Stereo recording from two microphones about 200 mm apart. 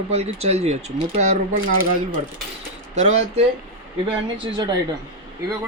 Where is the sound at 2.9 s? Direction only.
35° right (ahead or behind).